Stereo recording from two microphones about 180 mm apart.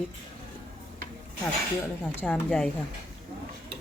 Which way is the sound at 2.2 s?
5° left (ahead or behind).